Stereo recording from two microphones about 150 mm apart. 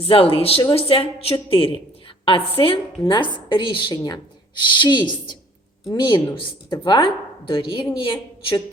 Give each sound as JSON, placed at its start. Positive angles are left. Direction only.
{"t": 0.0, "sound": "speech", "side_deg": 40}